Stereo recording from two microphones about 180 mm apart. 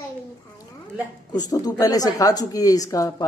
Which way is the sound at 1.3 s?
20° left (ahead or behind).